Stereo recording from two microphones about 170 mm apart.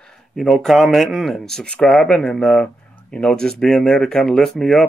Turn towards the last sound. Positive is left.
turn(degrees=0)  # may be behind; listen again after turning